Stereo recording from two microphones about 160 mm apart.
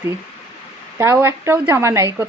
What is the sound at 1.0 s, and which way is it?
Speech, 15° right (ahead or behind).